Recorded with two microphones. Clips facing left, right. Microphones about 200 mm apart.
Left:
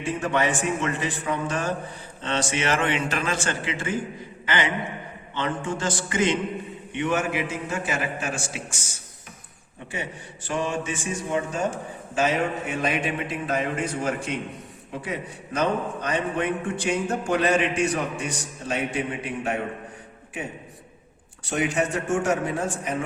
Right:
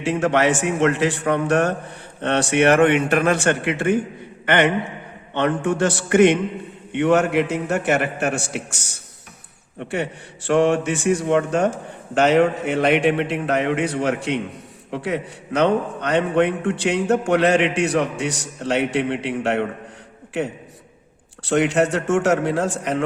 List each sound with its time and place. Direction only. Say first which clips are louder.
0.0 s a man's voice: right 6 dB; 75° right (ahead or behind)
21.4 s a man's voice: right 7 dB; 75° right (ahead or behind)